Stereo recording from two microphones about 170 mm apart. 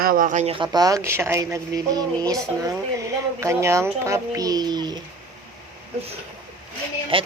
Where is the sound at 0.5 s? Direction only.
25° right (ahead or behind).